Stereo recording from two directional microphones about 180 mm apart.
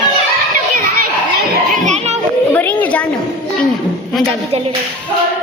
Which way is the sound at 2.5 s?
10° left (ahead or behind).